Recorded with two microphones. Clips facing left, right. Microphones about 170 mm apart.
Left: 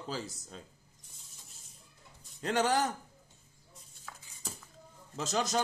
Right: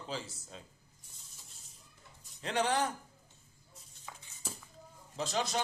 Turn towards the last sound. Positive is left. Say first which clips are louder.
# left 2 dB
turn(degrees=45)  # may be behind; listen again after turning